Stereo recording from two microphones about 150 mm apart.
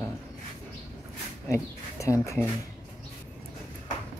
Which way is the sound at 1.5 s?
20° left (ahead or behind).